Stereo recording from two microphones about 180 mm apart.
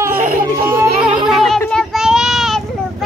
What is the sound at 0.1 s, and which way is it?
Baby cry, 55° right (ahead or behind).